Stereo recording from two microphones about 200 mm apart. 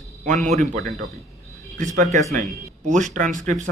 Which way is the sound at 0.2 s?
35° right (ahead or behind).